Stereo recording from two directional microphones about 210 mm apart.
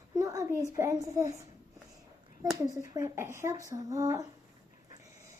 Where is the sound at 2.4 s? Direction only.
15° right (ahead or behind).